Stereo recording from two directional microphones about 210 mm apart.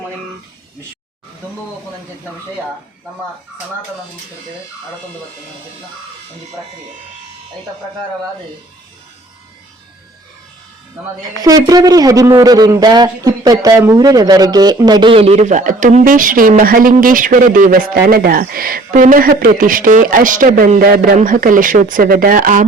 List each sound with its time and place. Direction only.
11.4 s a man's voice: 15° right (ahead or behind); by 22.6 s 40° right (ahead or behind)